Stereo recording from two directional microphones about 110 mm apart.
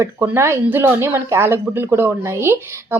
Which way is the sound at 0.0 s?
25° right (ahead or behind).